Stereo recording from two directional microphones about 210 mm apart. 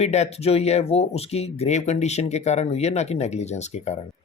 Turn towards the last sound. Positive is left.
turn(degrees=35)  # may be behind; listen again after turning